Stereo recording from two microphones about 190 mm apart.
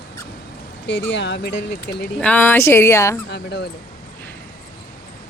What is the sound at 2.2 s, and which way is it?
Speech, 5° left (ahead or behind).